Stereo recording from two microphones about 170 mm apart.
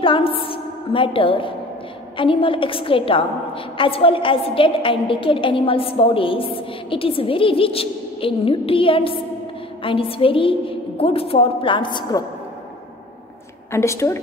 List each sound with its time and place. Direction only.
0.0 s a woman's voice: 30° left (ahead or behind)
13.7 s a woman's voice: 15° left (ahead or behind)